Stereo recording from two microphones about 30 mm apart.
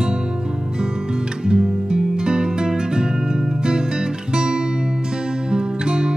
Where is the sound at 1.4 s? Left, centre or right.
Right.